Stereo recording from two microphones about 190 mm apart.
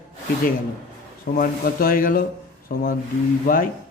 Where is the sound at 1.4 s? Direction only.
50° left (ahead or behind).